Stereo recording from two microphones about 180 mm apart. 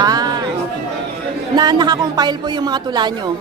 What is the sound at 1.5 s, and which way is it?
Speech, 20° right (ahead or behind).